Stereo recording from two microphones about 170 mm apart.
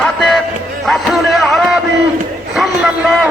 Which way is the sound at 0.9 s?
Centre (ahead or behind).